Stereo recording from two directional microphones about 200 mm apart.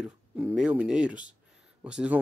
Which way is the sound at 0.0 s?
5° right (ahead or behind).